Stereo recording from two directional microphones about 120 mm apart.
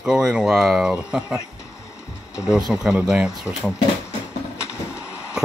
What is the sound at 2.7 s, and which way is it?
Speech, 5° right (ahead or behind).